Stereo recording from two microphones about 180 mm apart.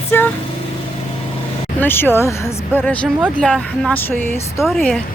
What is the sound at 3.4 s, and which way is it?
Speech, centre (ahead or behind).